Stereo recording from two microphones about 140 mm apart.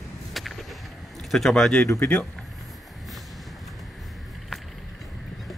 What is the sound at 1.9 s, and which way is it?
Speech, 15° left (ahead or behind).